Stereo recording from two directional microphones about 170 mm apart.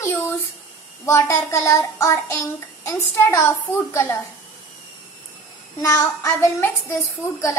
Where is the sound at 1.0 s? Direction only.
15° left (ahead or behind).